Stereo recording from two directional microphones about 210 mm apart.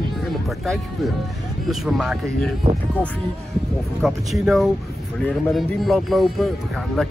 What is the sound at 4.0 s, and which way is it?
Speech, centre (ahead or behind).